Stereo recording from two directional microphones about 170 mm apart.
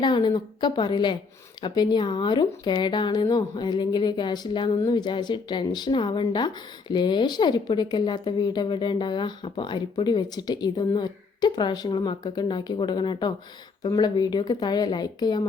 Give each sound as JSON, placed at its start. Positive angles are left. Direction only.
{"t": 0.0, "sound": "speech", "side_deg": 25}